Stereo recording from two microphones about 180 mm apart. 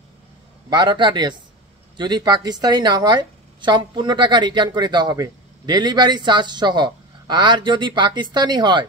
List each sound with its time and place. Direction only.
0.7 s a woman's voice: 25° right (ahead or behind)